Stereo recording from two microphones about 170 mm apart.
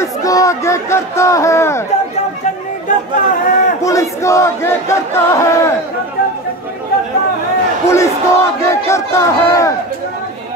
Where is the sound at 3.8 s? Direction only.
20° left (ahead or behind).